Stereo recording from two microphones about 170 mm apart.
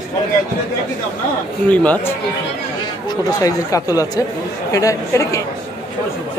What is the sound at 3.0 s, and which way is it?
Speech, 20° left (ahead or behind).